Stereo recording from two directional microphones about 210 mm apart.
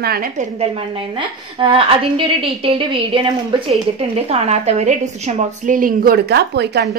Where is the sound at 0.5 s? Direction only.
25° right (ahead or behind).